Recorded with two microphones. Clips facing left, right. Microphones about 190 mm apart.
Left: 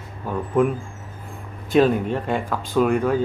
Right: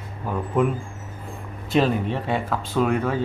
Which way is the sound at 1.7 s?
Centre (ahead or behind).